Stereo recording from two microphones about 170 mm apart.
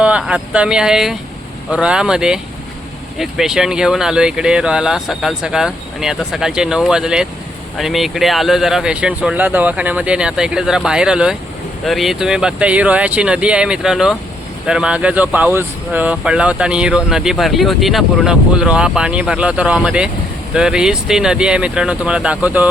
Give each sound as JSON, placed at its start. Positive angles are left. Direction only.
{"t": 0.0, "sound": "speech", "side_deg": -5}